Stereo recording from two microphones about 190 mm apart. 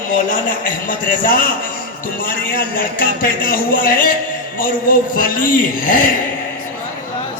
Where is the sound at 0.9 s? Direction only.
45° left (ahead or behind).